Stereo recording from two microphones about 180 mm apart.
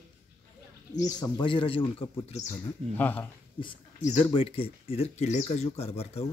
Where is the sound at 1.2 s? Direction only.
25° left (ahead or behind).